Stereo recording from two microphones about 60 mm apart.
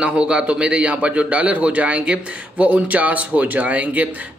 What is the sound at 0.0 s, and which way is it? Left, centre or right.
Speech, centre.